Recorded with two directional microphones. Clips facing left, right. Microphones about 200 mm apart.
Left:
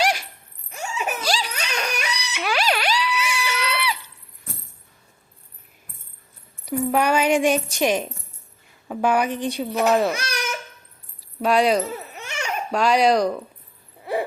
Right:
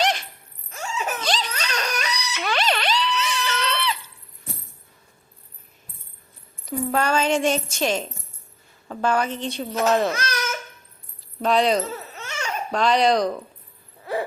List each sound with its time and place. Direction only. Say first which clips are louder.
0.0 s a sound: left 1 dB; 10° left (ahead or behind)
0.7 s crying: left 1 dB; 10° left (ahead or behind)
6.7 s a child's voice: left 3 dB; 15° left (ahead or behind)
11.3 s babbling: left 1 dB; 10° left (ahead or behind)
14.0 s owl: left 2 dB; 15° left (ahead or behind)